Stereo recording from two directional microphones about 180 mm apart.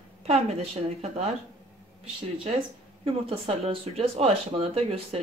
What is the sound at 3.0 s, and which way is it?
Speech, 30° right (ahead or behind).